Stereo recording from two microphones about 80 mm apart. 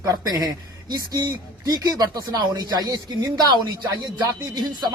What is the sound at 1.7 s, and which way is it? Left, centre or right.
Speech, right.